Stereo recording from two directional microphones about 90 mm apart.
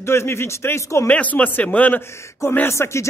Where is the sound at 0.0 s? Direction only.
30° left (ahead or behind).